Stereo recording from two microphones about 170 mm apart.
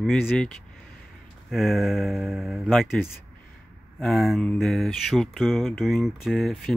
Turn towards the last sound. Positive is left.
turn(degrees=0)  # may be behind; listen again after turning